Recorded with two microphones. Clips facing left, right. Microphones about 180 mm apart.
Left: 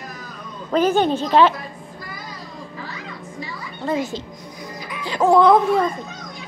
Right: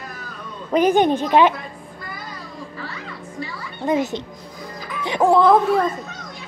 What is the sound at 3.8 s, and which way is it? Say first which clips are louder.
Speech: right 3 dB; 20° right (ahead or behind).